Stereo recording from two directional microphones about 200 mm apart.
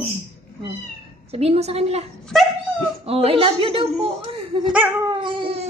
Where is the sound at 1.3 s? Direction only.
30° right (ahead or behind).